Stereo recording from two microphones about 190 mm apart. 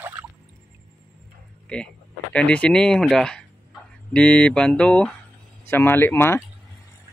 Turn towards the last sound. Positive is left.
turn(degrees=10)  # may be behind; listen again after turning